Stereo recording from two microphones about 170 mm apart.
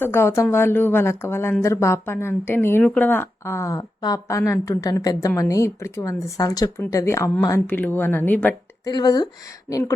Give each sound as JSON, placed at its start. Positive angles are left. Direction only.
{"t": 0.0, "sound": "speech", "side_deg": 15}
{"t": 8.8, "sound": "speech", "side_deg": 25}